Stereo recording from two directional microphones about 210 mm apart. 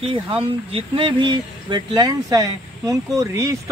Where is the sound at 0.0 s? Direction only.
25° right (ahead or behind).